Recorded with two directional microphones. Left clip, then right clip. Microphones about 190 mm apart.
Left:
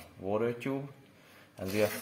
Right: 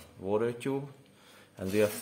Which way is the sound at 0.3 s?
15° right (ahead or behind).